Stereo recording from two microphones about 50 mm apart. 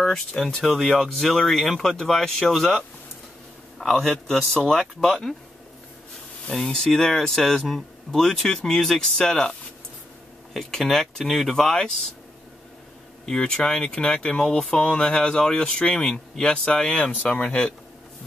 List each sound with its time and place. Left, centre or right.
0.0 s speech: centre
0.7 s speech: centre
6.6 s speech: centre
10.5 s speech: centre
13.2 s speech: centre
17.1 s speech: left